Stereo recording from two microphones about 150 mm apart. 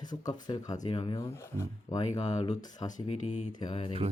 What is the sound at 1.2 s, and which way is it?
Speech, 20° left (ahead or behind).